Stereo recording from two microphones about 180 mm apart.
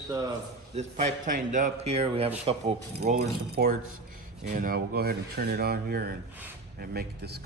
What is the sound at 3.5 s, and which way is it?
Speech, 55° right (ahead or behind).